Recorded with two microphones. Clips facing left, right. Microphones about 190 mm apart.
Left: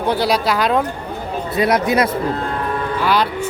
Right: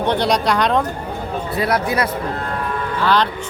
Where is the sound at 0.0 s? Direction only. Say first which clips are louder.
Even; 5° left (ahead or behind).